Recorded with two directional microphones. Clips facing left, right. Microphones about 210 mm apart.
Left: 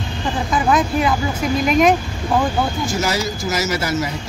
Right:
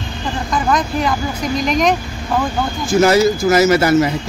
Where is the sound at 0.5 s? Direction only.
5° left (ahead or behind).